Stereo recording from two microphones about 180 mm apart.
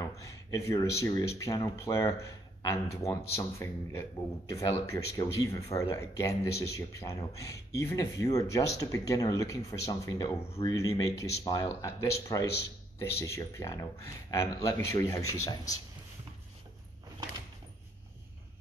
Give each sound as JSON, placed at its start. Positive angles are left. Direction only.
{"t": 0.0, "sound": "a man's voice", "side_deg": 15}